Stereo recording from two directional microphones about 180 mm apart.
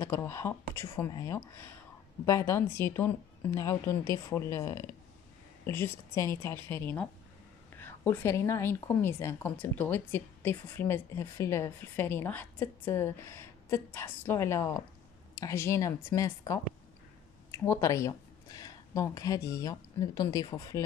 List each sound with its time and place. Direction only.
0.0 s a woman's voice: 15° left (ahead or behind)